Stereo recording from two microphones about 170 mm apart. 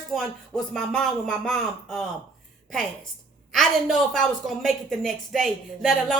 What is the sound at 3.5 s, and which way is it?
A woman's voice, centre (ahead or behind).